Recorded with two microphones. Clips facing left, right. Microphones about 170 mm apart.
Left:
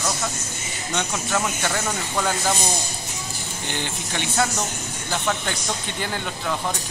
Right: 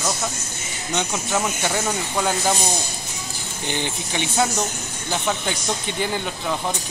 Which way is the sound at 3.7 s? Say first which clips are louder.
Right 3 dB; 15° right (ahead or behind).